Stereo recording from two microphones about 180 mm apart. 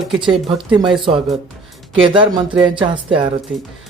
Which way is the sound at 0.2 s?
25° right (ahead or behind).